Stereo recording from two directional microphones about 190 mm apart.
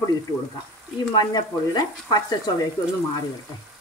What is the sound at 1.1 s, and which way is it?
Speech, 20° left (ahead or behind).